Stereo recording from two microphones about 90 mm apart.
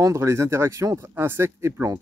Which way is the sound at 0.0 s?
35° right (ahead or behind).